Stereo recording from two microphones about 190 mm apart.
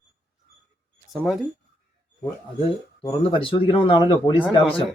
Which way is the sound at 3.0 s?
30° left (ahead or behind).